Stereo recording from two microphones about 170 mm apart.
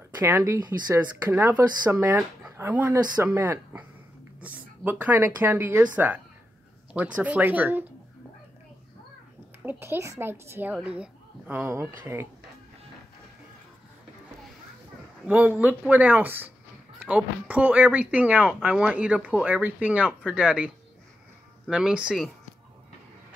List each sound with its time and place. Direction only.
0.2 s speech: 15° right (ahead or behind)
4.8 s speech: 10° right (ahead or behind)
9.6 s speech: 10° right (ahead or behind)
15.2 s speech: 10° right (ahead or behind)